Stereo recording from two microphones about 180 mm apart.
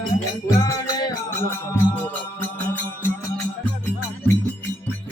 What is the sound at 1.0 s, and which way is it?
Music, 20° left (ahead or behind).